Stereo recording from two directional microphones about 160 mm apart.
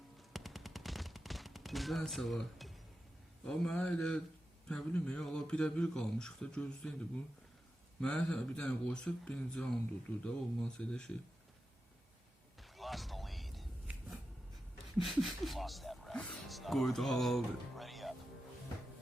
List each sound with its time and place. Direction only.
0.3 s machine gun: centre (ahead or behind)
3.4 s speech: 5° left (ahead or behind)
8.0 s speech: 5° left (ahead or behind)
12.6 s a sound: centre (ahead or behind)
14.9 s speech: centre (ahead or behind)